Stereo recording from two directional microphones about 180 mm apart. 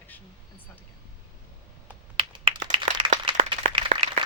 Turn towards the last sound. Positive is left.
turn(degrees=-30)  # may be behind; listen again after turning